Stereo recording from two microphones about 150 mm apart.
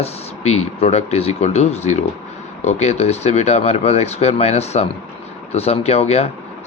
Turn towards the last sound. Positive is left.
turn(degrees=45)  # may be behind; listen again after turning